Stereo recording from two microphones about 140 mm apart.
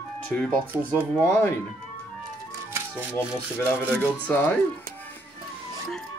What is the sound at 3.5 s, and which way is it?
Speech, 15° left (ahead or behind).